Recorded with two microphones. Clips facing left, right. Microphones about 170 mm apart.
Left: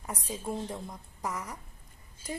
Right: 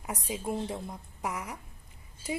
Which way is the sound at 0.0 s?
15° right (ahead or behind).